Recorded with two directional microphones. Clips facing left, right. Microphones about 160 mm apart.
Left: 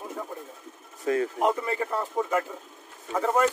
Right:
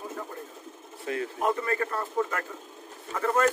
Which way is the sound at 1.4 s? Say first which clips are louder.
Left 2 dB; 15° left (ahead or behind).